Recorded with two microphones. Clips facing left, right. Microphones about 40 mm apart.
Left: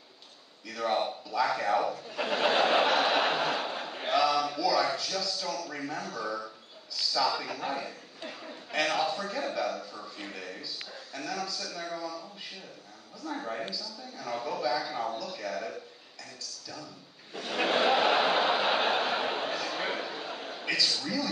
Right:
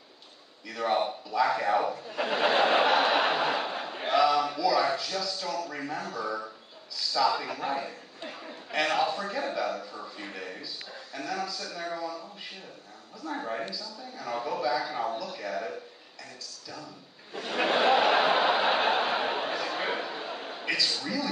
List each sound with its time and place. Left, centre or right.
0.7 s a man's voice: centre
17.3 s a sound: centre
20.9 s a man's voice: centre